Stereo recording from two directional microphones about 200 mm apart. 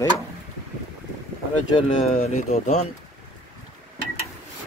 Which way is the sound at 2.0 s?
35° left (ahead or behind).